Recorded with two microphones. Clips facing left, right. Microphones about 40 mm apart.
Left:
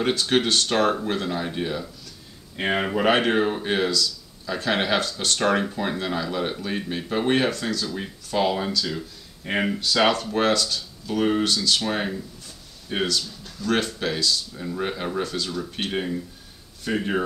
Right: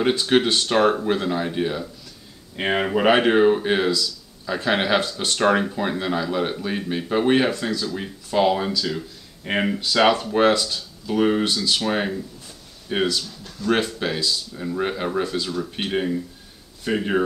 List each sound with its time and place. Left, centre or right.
0.0 s speech: centre